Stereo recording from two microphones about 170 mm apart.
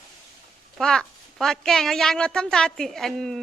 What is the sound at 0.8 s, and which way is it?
Speech, 5° left (ahead or behind).